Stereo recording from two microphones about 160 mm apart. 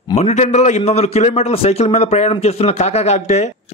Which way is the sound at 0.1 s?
45° left (ahead or behind).